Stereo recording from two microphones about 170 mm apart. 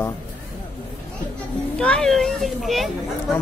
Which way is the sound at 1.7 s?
5° left (ahead or behind).